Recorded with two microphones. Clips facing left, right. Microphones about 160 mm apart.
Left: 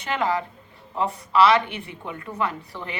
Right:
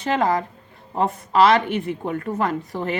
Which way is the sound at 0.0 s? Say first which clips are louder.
Right 4 dB; 40° right (ahead or behind).